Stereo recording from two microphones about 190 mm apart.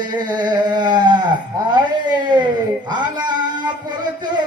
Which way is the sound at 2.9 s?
20° right (ahead or behind).